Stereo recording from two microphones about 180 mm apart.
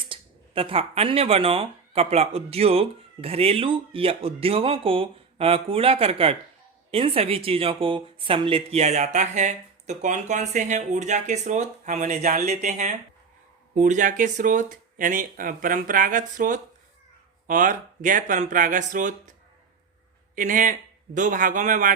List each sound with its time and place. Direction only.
0.1 s speech: 30° right (ahead or behind)
20.3 s speech: 45° right (ahead or behind)